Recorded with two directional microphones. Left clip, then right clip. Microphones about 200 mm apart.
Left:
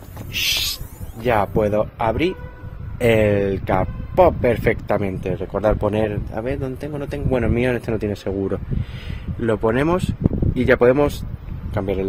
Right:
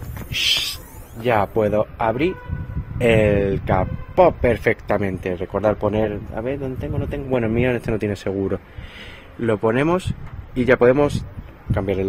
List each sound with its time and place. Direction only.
0.3 s owl: centre (ahead or behind)
1.2 s a man's voice: centre (ahead or behind)
5.8 s a man's voice: 15° left (ahead or behind)
7.7 s a man's voice: 5° right (ahead or behind)